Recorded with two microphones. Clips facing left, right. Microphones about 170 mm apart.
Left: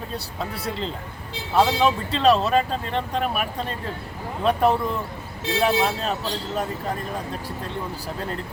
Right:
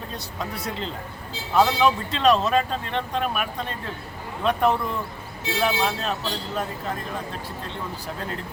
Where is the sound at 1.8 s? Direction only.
35° left (ahead or behind).